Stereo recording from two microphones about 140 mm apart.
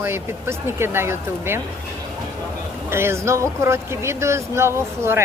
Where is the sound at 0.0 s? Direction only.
15° right (ahead or behind).